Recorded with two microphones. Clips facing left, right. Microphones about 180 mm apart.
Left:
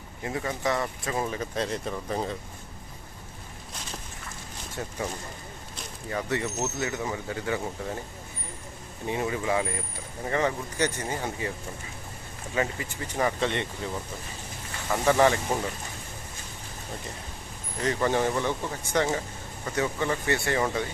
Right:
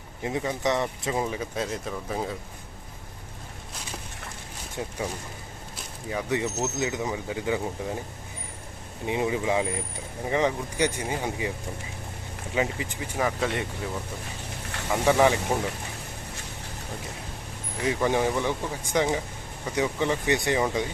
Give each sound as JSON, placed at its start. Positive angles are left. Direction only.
{"t": 0.2, "sound": "speech", "side_deg": -20}
{"t": 4.8, "sound": "speech", "side_deg": -10}
{"t": 6.1, "sound": "speech", "side_deg": -10}
{"t": 9.0, "sound": "speech", "side_deg": -15}
{"t": 12.5, "sound": "speech", "side_deg": -15}
{"t": 13.1, "sound": "speech", "side_deg": -5}
{"t": 15.0, "sound": "speech", "side_deg": -10}
{"t": 17.7, "sound": "speech", "side_deg": -10}